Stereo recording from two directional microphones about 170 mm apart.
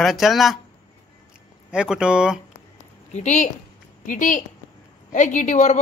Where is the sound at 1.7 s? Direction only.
5° right (ahead or behind).